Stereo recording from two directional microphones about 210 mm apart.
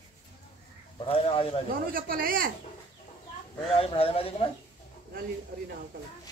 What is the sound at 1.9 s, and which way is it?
Speech, 45° right (ahead or behind).